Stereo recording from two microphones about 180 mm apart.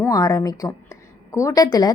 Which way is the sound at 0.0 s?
20° left (ahead or behind).